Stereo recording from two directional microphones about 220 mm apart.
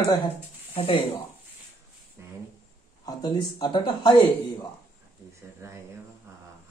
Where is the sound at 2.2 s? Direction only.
10° right (ahead or behind).